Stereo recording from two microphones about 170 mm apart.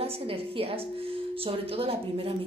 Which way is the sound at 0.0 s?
35° right (ahead or behind).